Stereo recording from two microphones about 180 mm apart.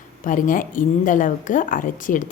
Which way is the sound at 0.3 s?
50° left (ahead or behind).